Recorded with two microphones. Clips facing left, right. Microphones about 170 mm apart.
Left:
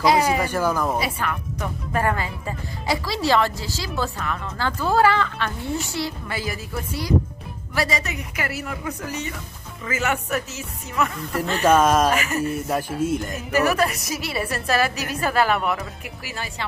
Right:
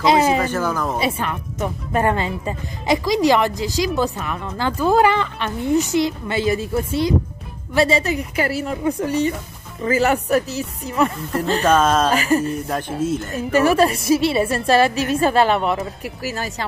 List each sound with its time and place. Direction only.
0.0 s a woman's voice: 25° right (ahead or behind)
0.4 s speech: 10° left (ahead or behind)
0.9 s a woman's voice: 25° right (ahead or behind)
11.6 s speech: 10° left (ahead or behind)
12.1 s speech: 35° right (ahead or behind)
12.4 s speech: 10° left (ahead or behind)
13.3 s a woman's voice: 30° right (ahead or behind)
16.2 s speech: 40° right (ahead or behind)